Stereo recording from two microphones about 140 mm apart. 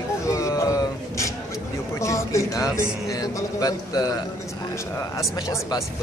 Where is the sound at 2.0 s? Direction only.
20° left (ahead or behind).